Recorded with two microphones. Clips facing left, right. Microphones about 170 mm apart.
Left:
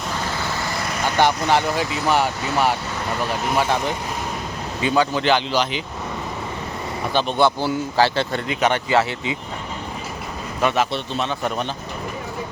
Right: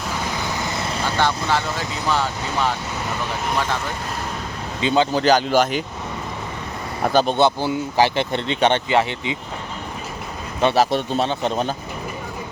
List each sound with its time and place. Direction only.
0.3 s vehicle: 15° right (ahead or behind)
1.2 s speech: 15° left (ahead or behind)
4.8 s speech: 25° right (ahead or behind)
5.2 s speech: 45° right (ahead or behind)
7.1 s speech: 40° right (ahead or behind)
7.3 s speech: 20° right (ahead or behind)
10.6 s speech: 30° right (ahead or behind)
10.9 s speech: 45° right (ahead or behind)
11.3 s speech: 30° right (ahead or behind)